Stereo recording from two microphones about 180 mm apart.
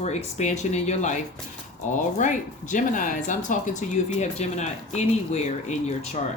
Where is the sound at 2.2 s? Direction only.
45° left (ahead or behind).